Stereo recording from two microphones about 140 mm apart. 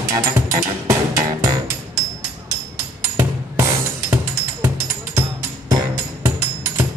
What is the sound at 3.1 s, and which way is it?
Music, 20° right (ahead or behind).